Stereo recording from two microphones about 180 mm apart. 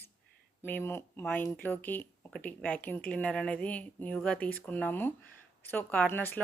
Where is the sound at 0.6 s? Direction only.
10° left (ahead or behind).